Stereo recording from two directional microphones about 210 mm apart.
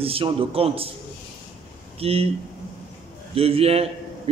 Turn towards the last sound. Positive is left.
turn(degrees=-30)  # may be behind; listen again after turning